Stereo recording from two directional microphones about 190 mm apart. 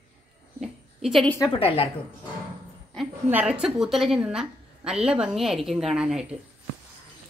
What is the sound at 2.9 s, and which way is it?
A woman's voice, 5° right (ahead or behind).